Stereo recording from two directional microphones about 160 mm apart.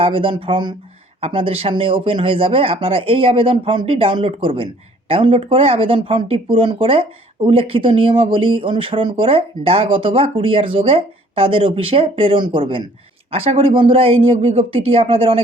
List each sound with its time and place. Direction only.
0.0 s speech: 35° right (ahead or behind)